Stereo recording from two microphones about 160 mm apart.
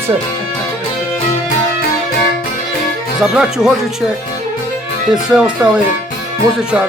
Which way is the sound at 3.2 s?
5° right (ahead or behind).